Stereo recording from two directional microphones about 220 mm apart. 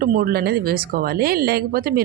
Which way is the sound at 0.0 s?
40° right (ahead or behind).